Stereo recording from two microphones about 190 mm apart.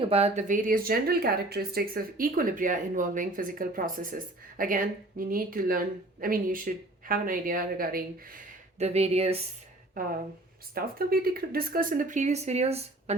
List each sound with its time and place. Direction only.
0.1 s speech: 35° right (ahead or behind)
8.8 s speech: 35° right (ahead or behind)
10.8 s speech: 50° right (ahead or behind); by 13.1 s 35° right (ahead or behind)